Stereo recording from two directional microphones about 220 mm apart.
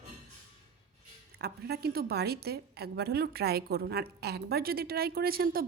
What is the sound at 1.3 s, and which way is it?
A woman's voice, 45° right (ahead or behind).